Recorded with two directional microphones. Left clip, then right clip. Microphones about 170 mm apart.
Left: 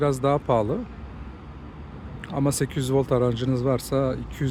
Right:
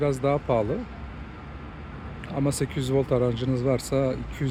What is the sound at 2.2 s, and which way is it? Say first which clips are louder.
Speech: left 2 dB; 20° left (ahead or behind).